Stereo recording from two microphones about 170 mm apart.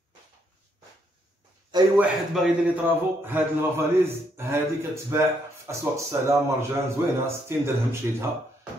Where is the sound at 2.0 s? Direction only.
5° right (ahead or behind).